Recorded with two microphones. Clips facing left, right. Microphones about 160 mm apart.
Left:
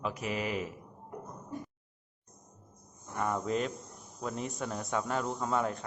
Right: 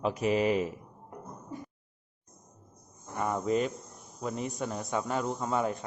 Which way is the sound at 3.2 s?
5° right (ahead or behind).